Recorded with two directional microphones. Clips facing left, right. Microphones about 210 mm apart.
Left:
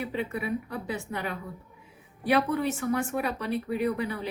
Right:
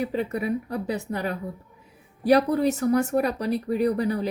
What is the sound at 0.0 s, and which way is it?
A woman's voice, 40° right (ahead or behind).